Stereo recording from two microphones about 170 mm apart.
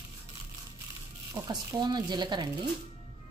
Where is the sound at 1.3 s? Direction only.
20° right (ahead or behind).